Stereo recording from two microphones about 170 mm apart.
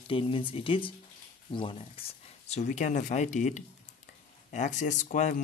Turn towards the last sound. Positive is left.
turn(degrees=45)  # may be behind; listen again after turning